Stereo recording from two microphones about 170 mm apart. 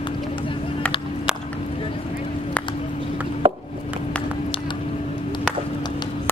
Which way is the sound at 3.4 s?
30° right (ahead or behind).